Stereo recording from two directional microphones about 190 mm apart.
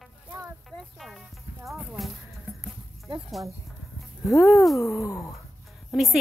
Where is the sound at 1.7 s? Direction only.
Centre (ahead or behind).